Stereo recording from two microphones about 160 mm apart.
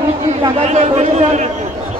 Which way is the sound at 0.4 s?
40° right (ahead or behind).